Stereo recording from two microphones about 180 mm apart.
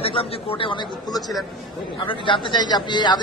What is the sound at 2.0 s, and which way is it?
Speech, 25° left (ahead or behind).